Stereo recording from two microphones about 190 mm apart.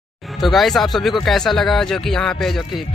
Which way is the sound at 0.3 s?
Centre (ahead or behind).